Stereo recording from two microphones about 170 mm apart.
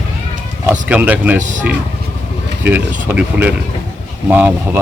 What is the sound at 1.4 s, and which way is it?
Speech, 45° right (ahead or behind).